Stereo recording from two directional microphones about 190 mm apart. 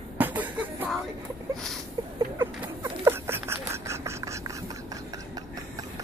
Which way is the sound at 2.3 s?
10° right (ahead or behind).